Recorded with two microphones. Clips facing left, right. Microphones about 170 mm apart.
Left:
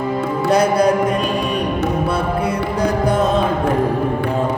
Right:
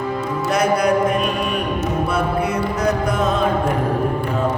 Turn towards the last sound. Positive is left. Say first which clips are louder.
# left 2 dB
turn(degrees=30)  # may be behind; listen again after turning